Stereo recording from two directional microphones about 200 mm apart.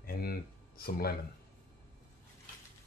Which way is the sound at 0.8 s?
50° left (ahead or behind).